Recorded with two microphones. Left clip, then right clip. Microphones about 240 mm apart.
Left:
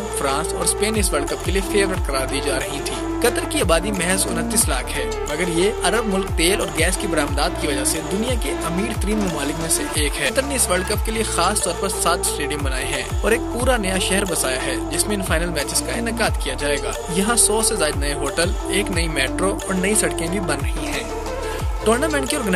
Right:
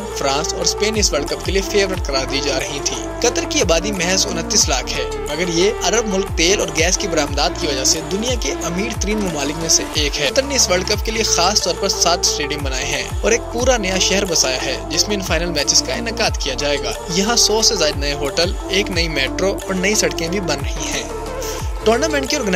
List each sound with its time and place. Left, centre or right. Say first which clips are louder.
0.2 s speech: right 4 dB; centre
12.9 s speech: right 3 dB; centre
21.8 s speech: right 3 dB; centre